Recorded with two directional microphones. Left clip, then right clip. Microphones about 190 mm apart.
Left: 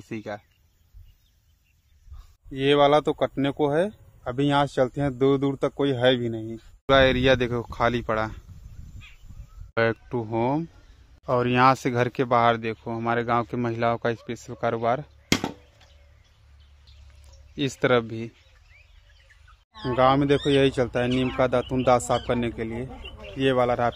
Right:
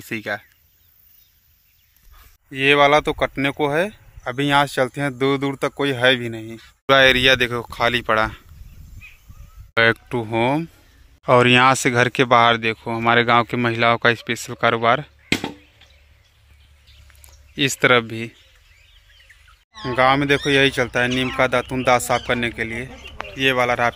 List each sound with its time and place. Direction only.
0.1 s speech: centre (ahead or behind)
2.5 s speech: centre (ahead or behind)
6.9 s speech: centre (ahead or behind)
9.8 s speech: 5° right (ahead or behind)
11.2 s speech: 15° right (ahead or behind)
15.3 s a sound: 30° left (ahead or behind)
17.6 s speech: 5° right (ahead or behind)
20.0 s speech: 5° left (ahead or behind)
23.3 s speech: 20° left (ahead or behind)